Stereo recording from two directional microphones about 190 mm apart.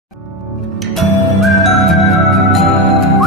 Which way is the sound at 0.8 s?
Centre (ahead or behind).